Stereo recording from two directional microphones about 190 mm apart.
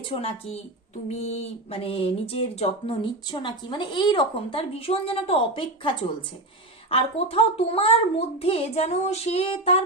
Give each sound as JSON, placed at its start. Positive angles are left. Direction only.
{"t": 0.1, "sound": "child singing", "side_deg": 30}
{"t": 1.0, "sound": "speech", "side_deg": 35}
{"t": 6.9, "sound": "child singing", "side_deg": 30}